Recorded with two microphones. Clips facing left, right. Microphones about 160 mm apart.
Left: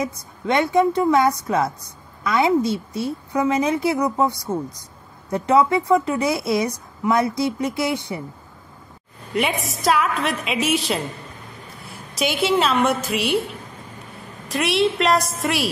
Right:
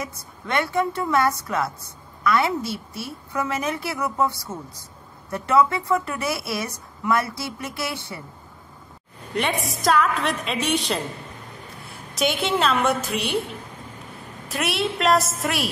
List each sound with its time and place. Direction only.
0.0 s a woman's voice: 20° left (ahead or behind)
9.3 s a woman's voice: 5° left (ahead or behind)
12.2 s a woman's voice: centre (ahead or behind)
14.5 s a woman's voice: centre (ahead or behind)